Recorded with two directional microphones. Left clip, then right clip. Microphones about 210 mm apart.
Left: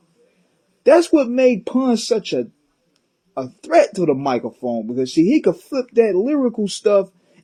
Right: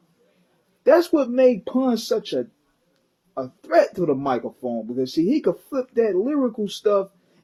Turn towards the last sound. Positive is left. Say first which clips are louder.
# left 5 dB
turn(degrees=35)  # may be behind; listen again after turning